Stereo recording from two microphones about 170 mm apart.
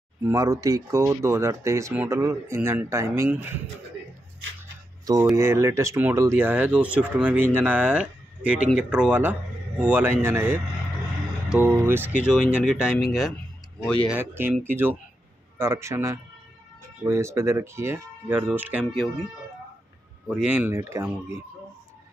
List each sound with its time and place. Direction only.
0.2 s speech: 20° right (ahead or behind)
5.3 s speech: 15° right (ahead or behind); by 14.1 s 5° left (ahead or behind)
14.1 s speech: 15° right (ahead or behind)
20.2 s speech: 5° right (ahead or behind)